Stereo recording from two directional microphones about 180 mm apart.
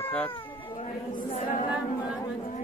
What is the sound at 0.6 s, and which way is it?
Cat, 30° left (ahead or behind).